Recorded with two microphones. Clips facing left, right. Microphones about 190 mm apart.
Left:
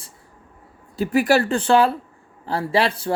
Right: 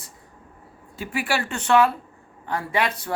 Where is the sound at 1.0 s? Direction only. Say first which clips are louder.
Left 9 dB; 40° left (ahead or behind).